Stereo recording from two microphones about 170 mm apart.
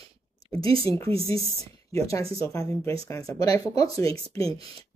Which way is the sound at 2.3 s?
20° left (ahead or behind).